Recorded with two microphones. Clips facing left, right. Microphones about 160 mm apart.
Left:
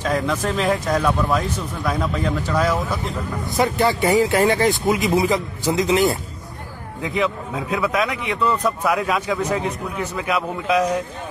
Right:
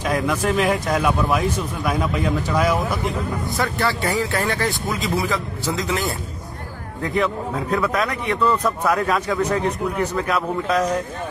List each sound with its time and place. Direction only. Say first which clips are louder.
0.0 s a man's voice: even; 10° right (ahead or behind)
3.5 s speech: left 6 dB; 20° left (ahead or behind)
7.7 s a man's voice: left 1 dB; 5° left (ahead or behind)